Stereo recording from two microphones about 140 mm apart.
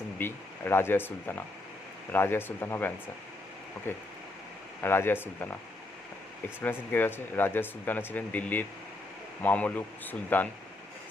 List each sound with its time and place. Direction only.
0.2 s speech: 15° left (ahead or behind)
2.1 s speech: 15° left (ahead or behind)
6.6 s speech: 15° left (ahead or behind)